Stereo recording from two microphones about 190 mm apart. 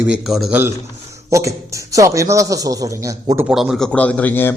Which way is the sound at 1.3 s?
15° right (ahead or behind).